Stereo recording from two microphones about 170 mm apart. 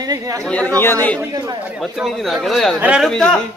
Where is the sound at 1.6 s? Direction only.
5° right (ahead or behind).